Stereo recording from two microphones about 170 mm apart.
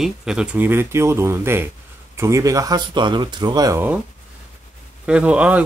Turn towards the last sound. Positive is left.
turn(degrees=-5)  # may be behind; listen again after turning